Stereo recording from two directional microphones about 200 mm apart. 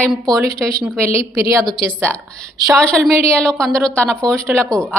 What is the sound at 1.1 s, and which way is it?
A woman's voice, 15° right (ahead or behind).